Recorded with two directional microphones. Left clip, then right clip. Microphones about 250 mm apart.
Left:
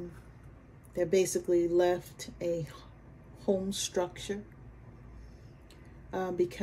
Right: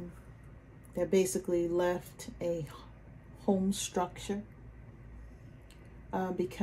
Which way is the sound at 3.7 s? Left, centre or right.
Centre.